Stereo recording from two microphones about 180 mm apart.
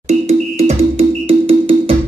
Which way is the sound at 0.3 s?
35° right (ahead or behind).